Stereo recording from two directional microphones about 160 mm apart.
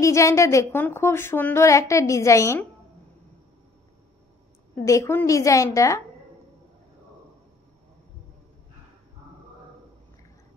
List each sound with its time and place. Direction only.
0.0 s a woman's voice: 20° left (ahead or behind)
4.8 s a woman's voice: 20° left (ahead or behind)